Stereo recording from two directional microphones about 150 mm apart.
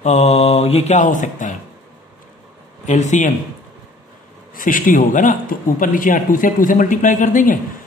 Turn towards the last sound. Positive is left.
turn(degrees=65)  # may be behind; listen again after turning